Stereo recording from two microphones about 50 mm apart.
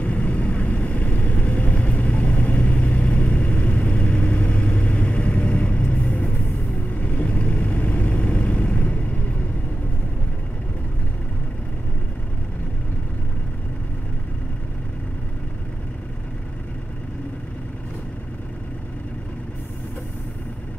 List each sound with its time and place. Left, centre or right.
0.0 s vehicle: left